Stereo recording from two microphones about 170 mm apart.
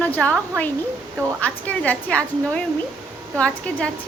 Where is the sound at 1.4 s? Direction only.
10° left (ahead or behind).